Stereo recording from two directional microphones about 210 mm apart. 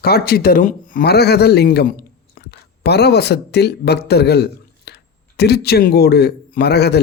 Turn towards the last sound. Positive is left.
turn(degrees=50)  # may be behind; listen again after turning